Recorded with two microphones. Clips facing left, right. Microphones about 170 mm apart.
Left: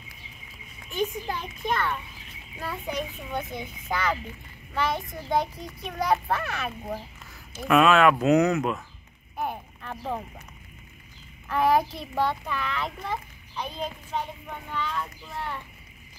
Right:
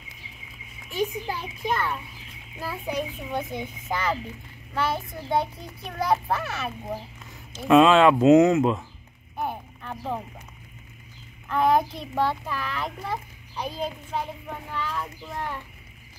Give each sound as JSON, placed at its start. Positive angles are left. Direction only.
{"t": 0.8, "sound": "a child's voice", "side_deg": -5}
{"t": 7.5, "sound": "speech", "side_deg": -25}
{"t": 9.4, "sound": "a sound", "side_deg": 0}
{"t": 11.4, "sound": "a child's voice", "side_deg": 5}